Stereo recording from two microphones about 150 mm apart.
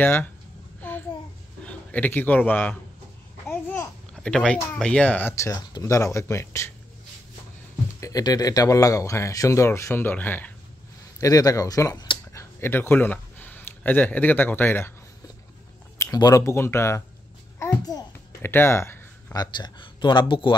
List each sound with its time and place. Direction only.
0.0 s speech: 15° left (ahead or behind)
0.7 s a sound: 10° left (ahead or behind)
1.7 s a man's voice: 10° left (ahead or behind)
3.4 s babbling: 15° left (ahead or behind)
4.1 s speech: 5° left (ahead or behind)
8.0 s speech: 25° left (ahead or behind)
11.1 s speech: 25° left (ahead or behind)
16.0 s speech: 25° left (ahead or behind)
17.8 s a sound: 20° left (ahead or behind)
19.4 s speech: 30° left (ahead or behind)